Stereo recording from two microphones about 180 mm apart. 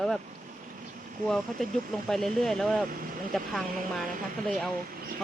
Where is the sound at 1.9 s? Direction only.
Centre (ahead or behind).